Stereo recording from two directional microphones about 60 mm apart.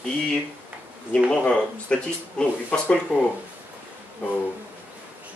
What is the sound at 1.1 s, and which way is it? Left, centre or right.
Speech, centre.